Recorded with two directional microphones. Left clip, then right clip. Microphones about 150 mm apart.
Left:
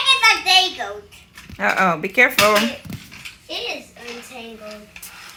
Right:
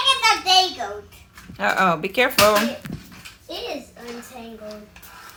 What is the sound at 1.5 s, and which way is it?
Speech, 5° right (ahead or behind).